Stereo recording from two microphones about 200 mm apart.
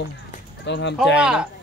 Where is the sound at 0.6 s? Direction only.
60° left (ahead or behind).